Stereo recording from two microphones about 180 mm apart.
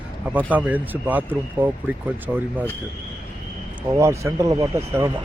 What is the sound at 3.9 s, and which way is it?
Speech, 15° right (ahead or behind).